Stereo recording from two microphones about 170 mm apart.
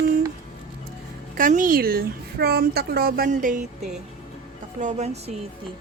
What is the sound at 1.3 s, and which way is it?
A woman's voice, 50° right (ahead or behind).